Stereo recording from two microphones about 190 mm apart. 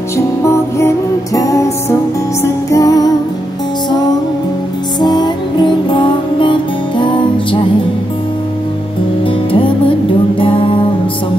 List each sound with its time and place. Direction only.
0.5 s music: 15° left (ahead or behind)
5.0 s music: 25° left (ahead or behind)
10.4 s music: 25° left (ahead or behind)